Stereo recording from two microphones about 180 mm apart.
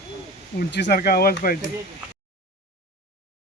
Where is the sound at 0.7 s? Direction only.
65° left (ahead or behind).